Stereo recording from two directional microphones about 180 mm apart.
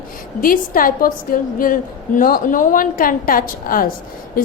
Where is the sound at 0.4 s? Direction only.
50° left (ahead or behind).